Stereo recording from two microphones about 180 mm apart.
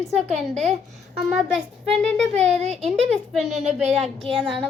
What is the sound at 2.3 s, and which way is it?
Speech, 40° right (ahead or behind).